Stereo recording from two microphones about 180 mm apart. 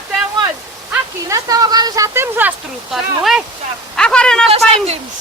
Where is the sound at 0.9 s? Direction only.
20° right (ahead or behind); by 4.5 s 5° left (ahead or behind).